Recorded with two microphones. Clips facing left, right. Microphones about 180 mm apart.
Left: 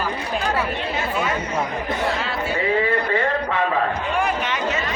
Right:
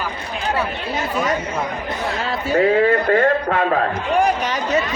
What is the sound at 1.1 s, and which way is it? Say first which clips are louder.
Chatter: right 4 dB; 40° right (ahead or behind).